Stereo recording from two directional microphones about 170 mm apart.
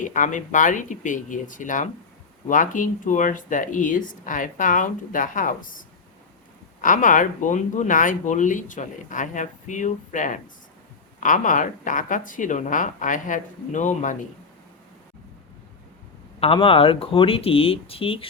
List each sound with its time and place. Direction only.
0.0 s speech: 50° left (ahead or behind)
6.8 s speech: 50° left (ahead or behind)
16.4 s speech: 35° left (ahead or behind)